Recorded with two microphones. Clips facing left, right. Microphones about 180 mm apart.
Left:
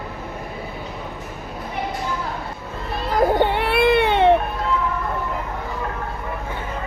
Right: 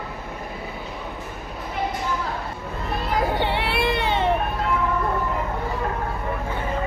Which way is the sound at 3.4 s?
50° left (ahead or behind).